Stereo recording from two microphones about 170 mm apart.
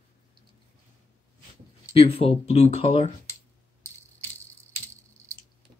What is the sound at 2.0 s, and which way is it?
Speech, 35° left (ahead or behind).